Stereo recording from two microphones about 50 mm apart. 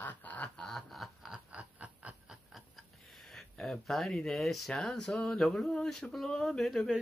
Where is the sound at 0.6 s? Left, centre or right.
Centre.